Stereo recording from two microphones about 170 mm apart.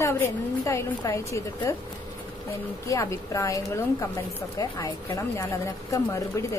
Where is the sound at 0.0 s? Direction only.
15° left (ahead or behind).